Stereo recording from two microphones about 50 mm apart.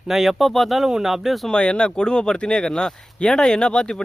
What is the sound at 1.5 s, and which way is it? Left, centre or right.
Speech, centre.